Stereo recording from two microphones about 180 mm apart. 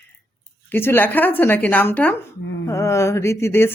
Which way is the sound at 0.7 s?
10° left (ahead or behind).